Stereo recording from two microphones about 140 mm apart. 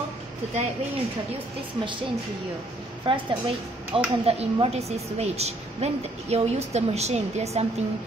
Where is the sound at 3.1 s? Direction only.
35° right (ahead or behind).